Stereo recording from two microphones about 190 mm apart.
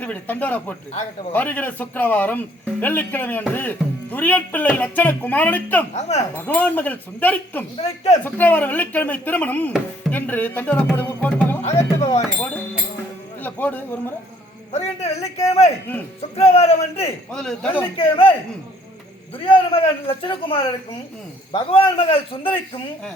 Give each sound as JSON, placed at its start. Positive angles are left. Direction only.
{"t": 0.0, "sound": "music", "side_deg": 10}
{"t": 5.9, "sound": "a man's voice", "side_deg": 35}
{"t": 6.3, "sound": "music", "side_deg": 10}
{"t": 7.8, "sound": "a man's voice", "side_deg": 35}
{"t": 8.2, "sound": "music", "side_deg": 10}
{"t": 13.4, "sound": "speech", "side_deg": 10}
{"t": 14.7, "sound": "a man's voice", "side_deg": 35}
{"t": 16.3, "sound": "a man's voice", "side_deg": 35}
{"t": 17.3, "sound": "speech", "side_deg": 5}
{"t": 17.9, "sound": "a man's voice", "side_deg": 30}
{"t": 19.4, "sound": "a man's voice", "side_deg": 30}